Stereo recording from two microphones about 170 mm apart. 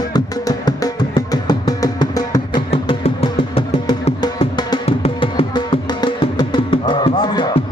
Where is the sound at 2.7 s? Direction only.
35° left (ahead or behind).